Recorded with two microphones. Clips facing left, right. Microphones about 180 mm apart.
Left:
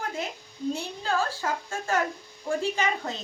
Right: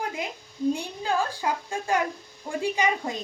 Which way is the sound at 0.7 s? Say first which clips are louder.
Left 2 dB; 15° right (ahead or behind).